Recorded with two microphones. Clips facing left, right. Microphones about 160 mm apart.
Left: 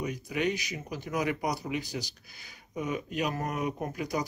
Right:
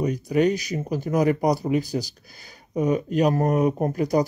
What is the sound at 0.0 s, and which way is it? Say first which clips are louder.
Speech: right 10 dB; 35° right (ahead or behind).